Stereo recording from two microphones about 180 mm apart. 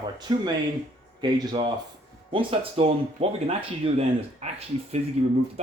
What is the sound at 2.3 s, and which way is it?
Speech, 30° right (ahead or behind).